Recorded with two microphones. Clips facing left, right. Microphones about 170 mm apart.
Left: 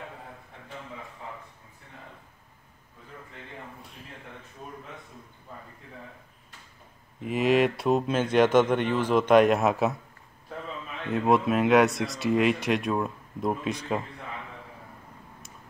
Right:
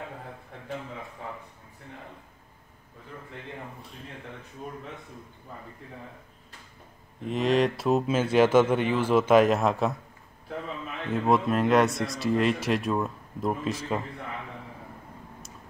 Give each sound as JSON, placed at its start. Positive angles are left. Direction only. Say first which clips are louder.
{"t": 7.2, "sound": "speech", "louder": "left 1 dB", "side_deg": 0}
{"t": 11.1, "sound": "speech", "louder": "left 1 dB", "side_deg": 0}